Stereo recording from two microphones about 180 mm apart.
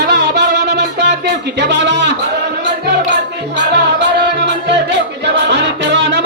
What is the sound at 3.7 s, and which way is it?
Music, 70° right (ahead or behind).